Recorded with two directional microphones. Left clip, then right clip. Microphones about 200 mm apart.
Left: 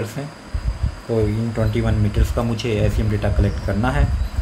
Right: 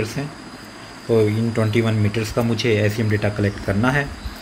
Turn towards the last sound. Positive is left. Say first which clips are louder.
# right 2 dB
turn(degrees=0)  # may be behind; listen again after turning